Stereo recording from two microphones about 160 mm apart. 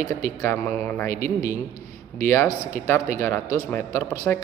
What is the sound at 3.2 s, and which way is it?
A man's voice, 15° left (ahead or behind).